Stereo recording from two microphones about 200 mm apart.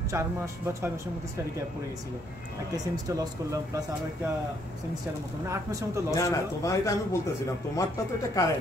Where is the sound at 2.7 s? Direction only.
20° right (ahead or behind).